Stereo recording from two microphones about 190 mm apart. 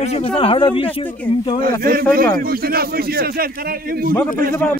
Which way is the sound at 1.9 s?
50° right (ahead or behind).